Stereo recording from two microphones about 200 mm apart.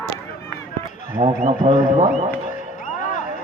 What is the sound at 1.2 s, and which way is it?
Speech, 25° right (ahead or behind).